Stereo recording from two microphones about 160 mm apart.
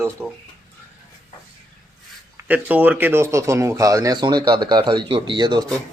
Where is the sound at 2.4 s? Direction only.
10° right (ahead or behind); by 5.6 s 30° right (ahead or behind).